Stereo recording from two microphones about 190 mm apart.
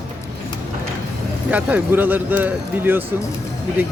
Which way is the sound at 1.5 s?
10° right (ahead or behind).